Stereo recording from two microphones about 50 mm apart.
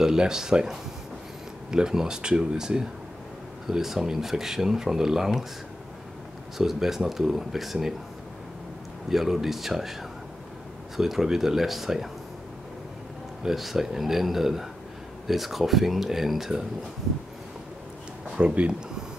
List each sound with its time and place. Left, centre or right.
0.0 s speech: centre
6.6 s speech: centre
9.1 s speech: centre
11.0 s speech: centre
13.4 s speech: centre
18.4 s speech: right